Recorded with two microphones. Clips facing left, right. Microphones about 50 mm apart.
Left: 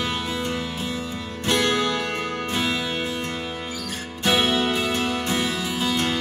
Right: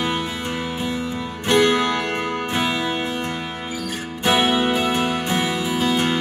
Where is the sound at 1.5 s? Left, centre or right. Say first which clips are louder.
Right 5 dB; centre.